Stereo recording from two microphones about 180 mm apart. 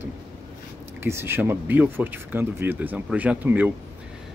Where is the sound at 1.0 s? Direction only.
15° right (ahead or behind).